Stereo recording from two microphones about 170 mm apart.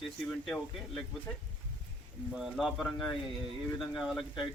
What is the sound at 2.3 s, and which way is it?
Speech, centre (ahead or behind).